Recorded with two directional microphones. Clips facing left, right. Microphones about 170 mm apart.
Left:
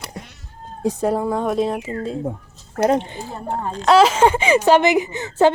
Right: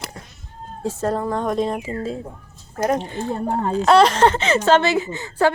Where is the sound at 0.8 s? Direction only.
15° left (ahead or behind).